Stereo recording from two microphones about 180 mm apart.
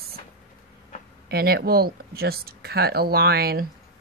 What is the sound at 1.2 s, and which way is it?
Speech, 60° right (ahead or behind).